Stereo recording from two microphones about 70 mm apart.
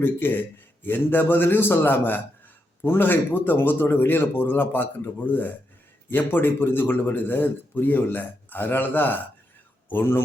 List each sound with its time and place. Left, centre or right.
0.0 s a man's voice: left